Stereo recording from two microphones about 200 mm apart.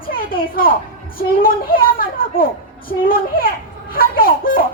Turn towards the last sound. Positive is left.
turn(degrees=45)  # may be behind; listen again after turning